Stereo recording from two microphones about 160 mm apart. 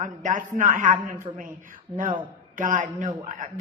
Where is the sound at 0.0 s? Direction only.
55° right (ahead or behind).